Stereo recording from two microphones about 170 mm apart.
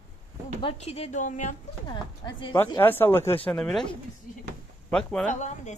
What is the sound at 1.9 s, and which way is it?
Speech, 25° left (ahead or behind).